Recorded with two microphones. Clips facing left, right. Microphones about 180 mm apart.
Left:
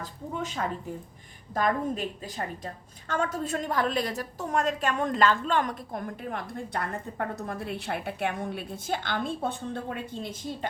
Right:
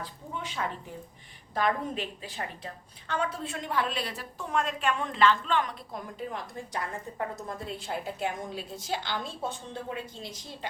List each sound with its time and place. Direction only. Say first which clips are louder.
0.0 s a woman's voice: left 4 dB; 45° left (ahead or behind)